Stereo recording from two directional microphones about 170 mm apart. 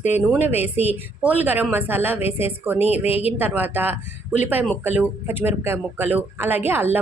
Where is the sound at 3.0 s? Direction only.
35° left (ahead or behind).